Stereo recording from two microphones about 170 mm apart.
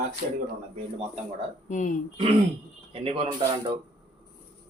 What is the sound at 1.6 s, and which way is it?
Speech, 45° left (ahead or behind).